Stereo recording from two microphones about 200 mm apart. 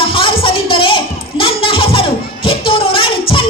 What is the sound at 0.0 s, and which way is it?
Music, 25° left (ahead or behind).